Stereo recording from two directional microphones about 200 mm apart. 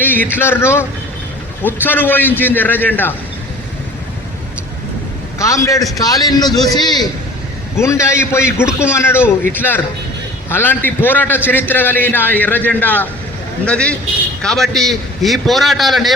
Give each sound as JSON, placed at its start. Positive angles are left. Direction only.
{"t": 0.0, "sound": "a man's voice", "side_deg": 10}
{"t": 5.4, "sound": "a man's voice", "side_deg": 15}